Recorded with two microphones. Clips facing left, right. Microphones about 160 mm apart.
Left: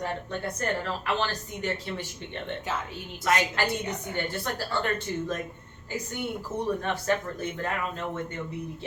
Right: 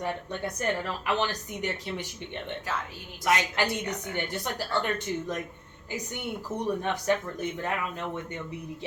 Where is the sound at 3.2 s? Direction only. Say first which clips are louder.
Even; 20° right (ahead or behind).